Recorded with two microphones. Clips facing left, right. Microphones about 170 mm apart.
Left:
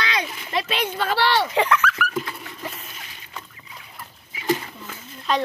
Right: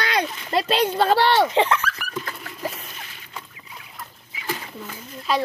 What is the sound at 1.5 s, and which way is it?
Speech, 25° right (ahead or behind).